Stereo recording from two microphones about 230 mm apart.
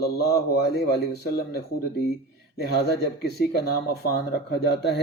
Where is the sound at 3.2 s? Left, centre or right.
Left.